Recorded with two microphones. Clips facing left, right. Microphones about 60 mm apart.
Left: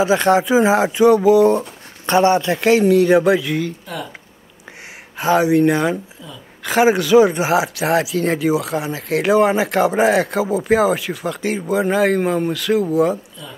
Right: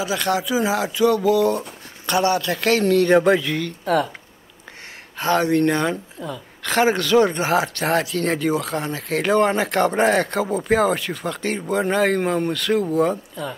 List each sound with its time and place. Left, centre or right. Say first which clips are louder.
0.0 s speech: left 7 dB; left; by 3.7 s centre
3.8 s speech: right 9 dB; right
5.1 s speech: left 4 dB; centre